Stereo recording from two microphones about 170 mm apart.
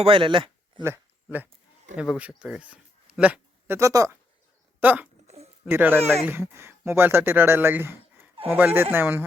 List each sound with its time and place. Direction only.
0.0 s speech: 30° right (ahead or behind)
0.8 s a sound: 10° right (ahead or behind)
2.0 s speech: 5° right (ahead or behind)